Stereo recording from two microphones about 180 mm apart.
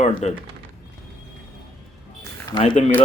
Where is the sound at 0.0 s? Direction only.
35° left (ahead or behind).